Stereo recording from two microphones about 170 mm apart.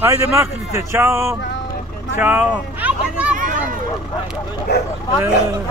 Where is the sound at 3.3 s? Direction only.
50° right (ahead or behind).